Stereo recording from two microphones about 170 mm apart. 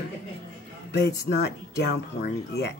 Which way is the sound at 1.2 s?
75° left (ahead or behind).